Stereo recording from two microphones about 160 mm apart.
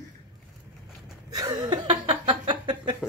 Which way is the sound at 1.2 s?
20° right (ahead or behind).